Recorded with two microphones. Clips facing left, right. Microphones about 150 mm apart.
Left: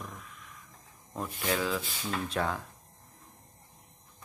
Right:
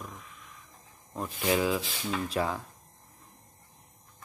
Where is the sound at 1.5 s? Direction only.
15° right (ahead or behind).